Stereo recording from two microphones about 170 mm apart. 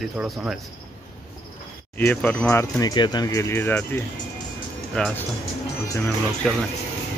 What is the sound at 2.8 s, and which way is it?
Speech, 25° left (ahead or behind).